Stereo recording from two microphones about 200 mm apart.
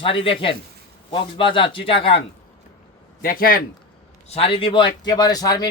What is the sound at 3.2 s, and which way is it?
Speech, 45° left (ahead or behind).